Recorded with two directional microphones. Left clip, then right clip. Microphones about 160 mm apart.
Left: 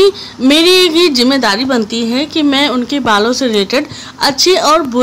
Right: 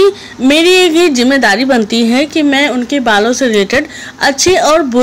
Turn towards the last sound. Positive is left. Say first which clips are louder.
# right 1 dB
turn(degrees=-5)  # may be behind; listen again after turning